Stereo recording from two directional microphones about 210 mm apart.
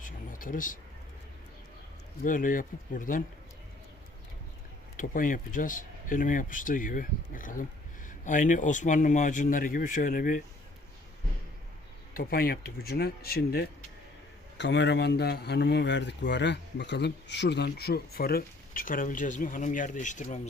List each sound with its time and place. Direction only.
0.0 s a sound: 40° left (ahead or behind)
2.2 s speech: 40° left (ahead or behind)
4.9 s speech: 40° left (ahead or behind)
12.1 s speech: 45° left (ahead or behind)
14.6 s speech: 55° left (ahead or behind); by 20.5 s 35° left (ahead or behind)